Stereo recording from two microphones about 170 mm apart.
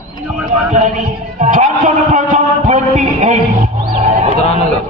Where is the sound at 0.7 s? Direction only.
45° right (ahead or behind).